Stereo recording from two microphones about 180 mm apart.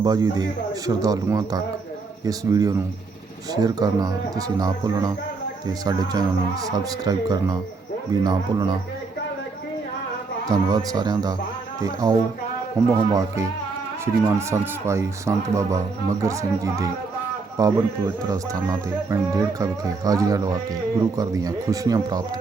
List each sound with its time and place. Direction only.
0.0 s speech: 20° right (ahead or behind)
6.7 s speech: 20° right (ahead or behind)
10.5 s speech: 20° right (ahead or behind)